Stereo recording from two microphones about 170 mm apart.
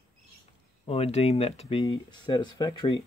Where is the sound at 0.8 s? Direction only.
35° left (ahead or behind).